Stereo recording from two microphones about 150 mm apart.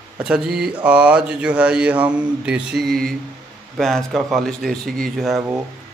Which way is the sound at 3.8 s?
Centre (ahead or behind).